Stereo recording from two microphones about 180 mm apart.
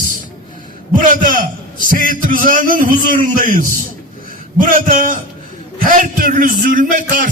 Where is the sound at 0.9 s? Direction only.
50° right (ahead or behind).